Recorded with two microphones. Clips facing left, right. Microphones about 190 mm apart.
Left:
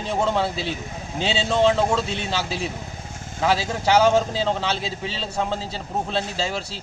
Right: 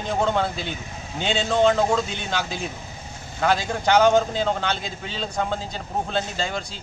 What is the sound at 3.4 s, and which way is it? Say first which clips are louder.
A man's voice: even; 5° left (ahead or behind).